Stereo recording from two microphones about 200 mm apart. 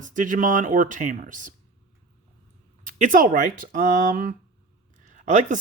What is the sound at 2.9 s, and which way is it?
Speech, 40° right (ahead or behind).